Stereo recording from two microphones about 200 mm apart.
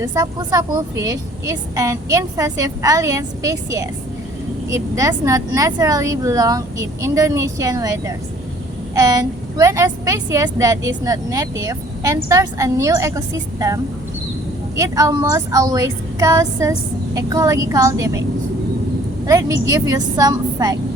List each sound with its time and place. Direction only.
0.0 s a woman's voice: 15° right (ahead or behind)
14.8 s a woman's voice: 15° right (ahead or behind)
19.2 s a woman's voice: 15° right (ahead or behind)